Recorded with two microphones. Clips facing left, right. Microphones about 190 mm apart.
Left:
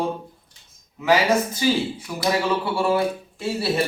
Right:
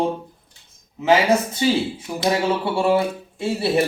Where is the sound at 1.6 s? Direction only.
25° right (ahead or behind).